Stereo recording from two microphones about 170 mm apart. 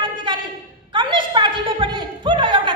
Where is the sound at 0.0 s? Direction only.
30° right (ahead or behind).